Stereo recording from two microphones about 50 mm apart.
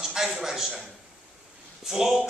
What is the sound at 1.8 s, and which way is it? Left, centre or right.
Speech, centre.